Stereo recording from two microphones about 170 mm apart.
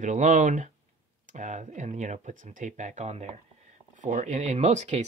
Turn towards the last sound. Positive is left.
turn(degrees=-40)  # may be behind; listen again after turning